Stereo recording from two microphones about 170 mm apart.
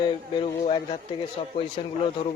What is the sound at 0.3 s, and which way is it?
Speech, 35° left (ahead or behind).